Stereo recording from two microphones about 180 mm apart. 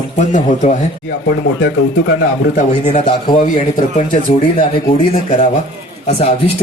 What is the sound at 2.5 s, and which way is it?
Speech, 40° left (ahead or behind).